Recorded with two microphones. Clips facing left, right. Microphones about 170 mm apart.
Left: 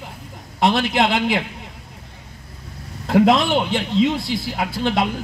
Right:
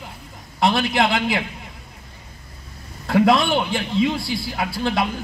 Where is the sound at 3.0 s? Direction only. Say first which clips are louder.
Left 1 dB; 20° left (ahead or behind).